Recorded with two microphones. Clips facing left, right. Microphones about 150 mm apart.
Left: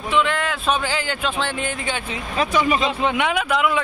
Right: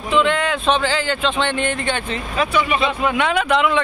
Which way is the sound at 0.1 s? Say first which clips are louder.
Right 4 dB; centre (ahead or behind).